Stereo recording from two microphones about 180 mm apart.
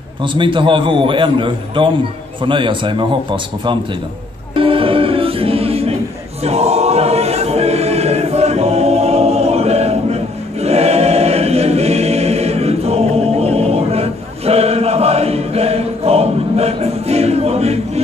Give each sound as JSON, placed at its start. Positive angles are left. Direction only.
{"t": 0.2, "sound": "a man's voice", "side_deg": -25}
{"t": 4.6, "sound": "music", "side_deg": -30}
{"t": 6.4, "sound": "choir", "side_deg": -35}